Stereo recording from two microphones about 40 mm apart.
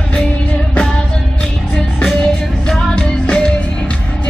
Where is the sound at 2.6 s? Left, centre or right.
Left.